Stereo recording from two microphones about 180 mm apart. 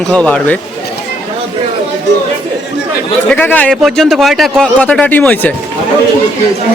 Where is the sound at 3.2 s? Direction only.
10° left (ahead or behind).